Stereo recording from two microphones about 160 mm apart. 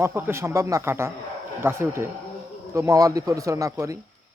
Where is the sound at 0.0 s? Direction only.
15° right (ahead or behind).